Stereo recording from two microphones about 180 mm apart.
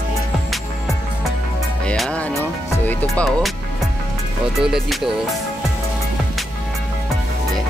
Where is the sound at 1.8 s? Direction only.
5° left (ahead or behind).